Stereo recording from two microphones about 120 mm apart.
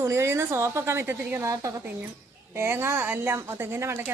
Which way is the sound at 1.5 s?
25° right (ahead or behind).